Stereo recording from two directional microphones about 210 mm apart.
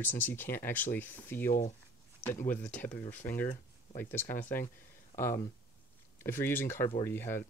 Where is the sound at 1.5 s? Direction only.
40° left (ahead or behind).